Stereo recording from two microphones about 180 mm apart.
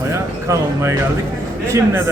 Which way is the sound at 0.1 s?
15° right (ahead or behind).